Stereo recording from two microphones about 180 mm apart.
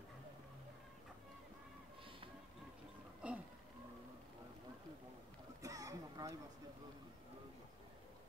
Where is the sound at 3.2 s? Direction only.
5° right (ahead or behind).